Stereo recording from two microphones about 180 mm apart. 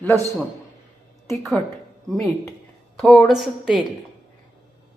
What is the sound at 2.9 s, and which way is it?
Speech, centre (ahead or behind).